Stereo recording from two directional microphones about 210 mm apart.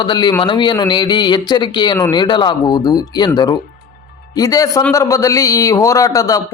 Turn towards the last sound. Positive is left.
turn(degrees=15)  # may be behind; listen again after turning